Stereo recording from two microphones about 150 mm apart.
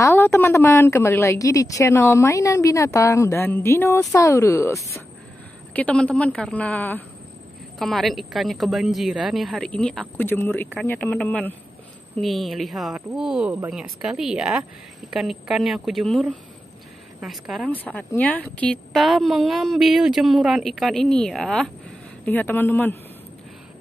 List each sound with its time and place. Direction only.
0.0 s a woman's voice: 15° left (ahead or behind)
5.7 s a woman's voice: 10° left (ahead or behind)
7.8 s a woman's voice: centre (ahead or behind)
12.2 s a woman's voice: centre (ahead or behind)
17.6 s a woman's voice: 10° left (ahead or behind)